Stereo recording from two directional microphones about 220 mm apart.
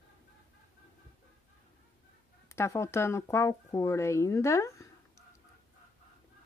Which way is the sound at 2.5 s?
15° left (ahead or behind).